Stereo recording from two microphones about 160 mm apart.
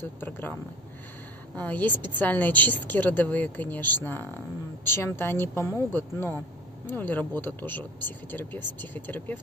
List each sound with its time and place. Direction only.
0.0 s speech: 10° left (ahead or behind)
1.6 s speech: 10° left (ahead or behind)